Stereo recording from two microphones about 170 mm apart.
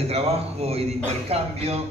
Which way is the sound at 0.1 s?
35° right (ahead or behind).